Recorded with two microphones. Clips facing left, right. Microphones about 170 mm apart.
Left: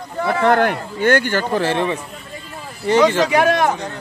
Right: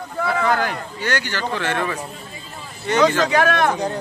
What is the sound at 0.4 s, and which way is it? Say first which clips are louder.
Speech: left 8 dB; 60° left (ahead or behind).